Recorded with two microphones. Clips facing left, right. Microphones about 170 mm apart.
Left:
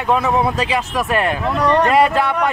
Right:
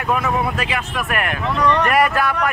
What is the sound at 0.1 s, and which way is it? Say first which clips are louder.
Speech: left 4 dB; 25° left (ahead or behind).